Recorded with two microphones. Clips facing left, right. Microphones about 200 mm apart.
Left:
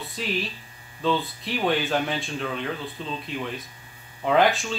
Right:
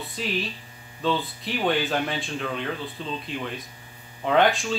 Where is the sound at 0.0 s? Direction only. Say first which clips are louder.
Even; centre (ahead or behind).